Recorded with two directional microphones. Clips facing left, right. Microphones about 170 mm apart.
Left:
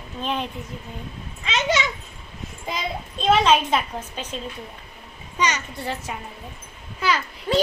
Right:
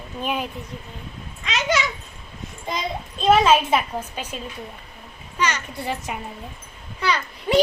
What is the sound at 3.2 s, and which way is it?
A child's voice, centre (ahead or behind).